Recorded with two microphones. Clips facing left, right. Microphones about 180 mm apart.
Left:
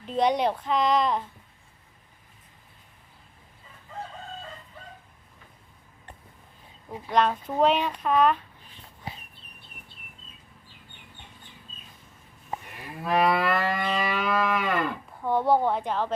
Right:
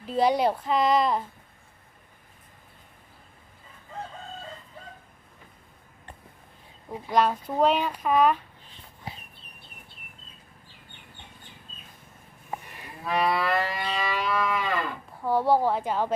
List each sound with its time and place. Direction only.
0.0 s speech: 5° right (ahead or behind)
7.1 s speech: 5° right (ahead or behind)
13.0 s moo: 50° left (ahead or behind)
15.2 s speech: 5° right (ahead or behind)